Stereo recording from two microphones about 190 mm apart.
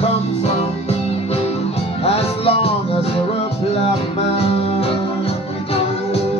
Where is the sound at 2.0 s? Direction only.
30° left (ahead or behind).